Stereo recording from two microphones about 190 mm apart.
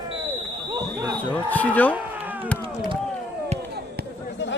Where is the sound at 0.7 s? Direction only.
20° right (ahead or behind).